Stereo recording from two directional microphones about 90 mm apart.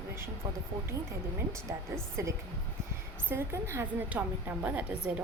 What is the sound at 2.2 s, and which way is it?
A woman's voice, 35° right (ahead or behind).